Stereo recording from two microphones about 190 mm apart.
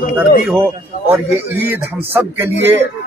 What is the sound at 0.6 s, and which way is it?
A man's voice, 15° right (ahead or behind).